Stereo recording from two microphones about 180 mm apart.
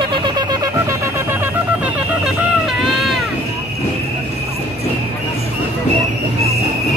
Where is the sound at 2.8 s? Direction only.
Centre (ahead or behind).